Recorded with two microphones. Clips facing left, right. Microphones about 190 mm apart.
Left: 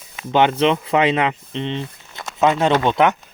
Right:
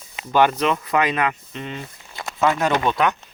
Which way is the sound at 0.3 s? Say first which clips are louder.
Left 2 dB; 25° left (ahead or behind).